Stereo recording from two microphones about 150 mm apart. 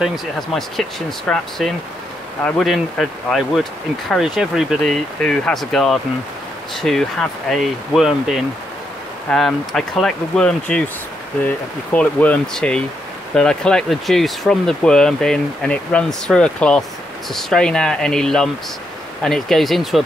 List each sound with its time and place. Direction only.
0.0 s speech: centre (ahead or behind)